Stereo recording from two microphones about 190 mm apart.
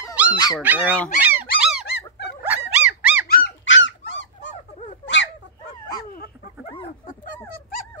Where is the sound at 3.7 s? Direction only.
75° left (ahead or behind).